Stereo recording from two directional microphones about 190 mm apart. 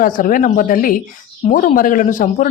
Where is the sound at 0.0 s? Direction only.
45° left (ahead or behind).